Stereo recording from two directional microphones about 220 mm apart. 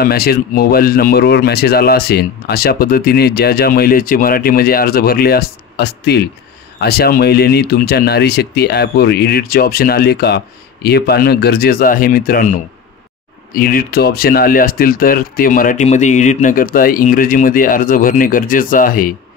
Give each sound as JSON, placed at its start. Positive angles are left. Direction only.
{"t": 0.0, "sound": "speech", "side_deg": 45}
{"t": 13.5, "sound": "speech", "side_deg": 40}